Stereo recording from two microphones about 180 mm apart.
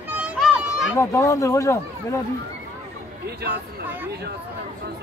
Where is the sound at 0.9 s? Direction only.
15° left (ahead or behind).